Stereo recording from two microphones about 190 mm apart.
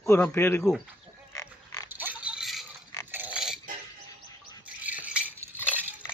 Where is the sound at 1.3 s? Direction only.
15° left (ahead or behind).